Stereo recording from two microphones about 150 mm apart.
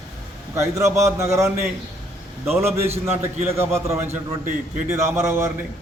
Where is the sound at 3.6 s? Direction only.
20° right (ahead or behind).